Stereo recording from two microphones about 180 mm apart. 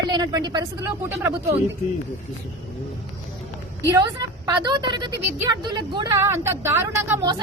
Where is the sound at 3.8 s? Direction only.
20° right (ahead or behind).